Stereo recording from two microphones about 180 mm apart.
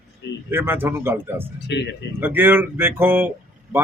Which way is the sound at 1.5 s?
75° left (ahead or behind).